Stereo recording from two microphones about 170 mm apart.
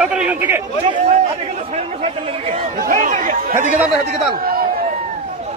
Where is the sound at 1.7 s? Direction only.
40° right (ahead or behind).